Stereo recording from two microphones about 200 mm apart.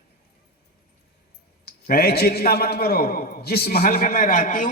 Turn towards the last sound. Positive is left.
turn(degrees=40)  # may be behind; listen again after turning